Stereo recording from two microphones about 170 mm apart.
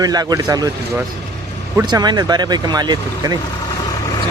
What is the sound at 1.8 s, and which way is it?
Speech, 25° right (ahead or behind).